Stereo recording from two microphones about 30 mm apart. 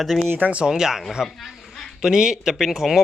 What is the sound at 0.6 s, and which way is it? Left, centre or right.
Speech, right.